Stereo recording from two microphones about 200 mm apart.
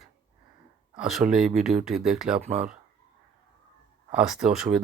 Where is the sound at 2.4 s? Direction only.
35° right (ahead or behind).